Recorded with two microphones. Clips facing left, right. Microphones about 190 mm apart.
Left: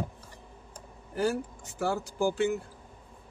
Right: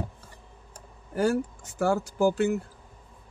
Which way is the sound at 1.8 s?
50° right (ahead or behind).